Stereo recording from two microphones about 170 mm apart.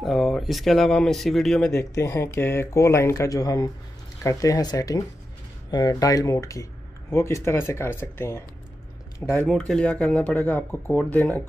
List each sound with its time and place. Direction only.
0.0 s speech: centre (ahead or behind)
1.8 s speech: 15° left (ahead or behind)
9.5 s speech: 5° left (ahead or behind)